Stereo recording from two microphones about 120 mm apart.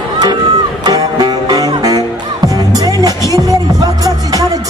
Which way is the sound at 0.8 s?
35° right (ahead or behind).